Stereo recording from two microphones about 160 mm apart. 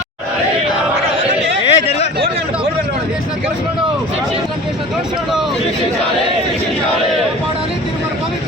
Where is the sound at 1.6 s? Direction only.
40° left (ahead or behind).